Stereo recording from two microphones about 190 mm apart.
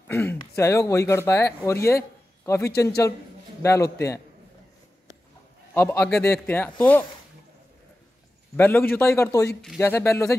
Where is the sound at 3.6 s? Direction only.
15° left (ahead or behind).